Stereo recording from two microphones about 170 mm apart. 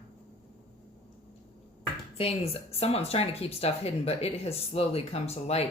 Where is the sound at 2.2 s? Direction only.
35° left (ahead or behind).